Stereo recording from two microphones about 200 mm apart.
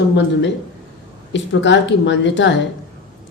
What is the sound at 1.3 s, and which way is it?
A woman's voice, 65° left (ahead or behind).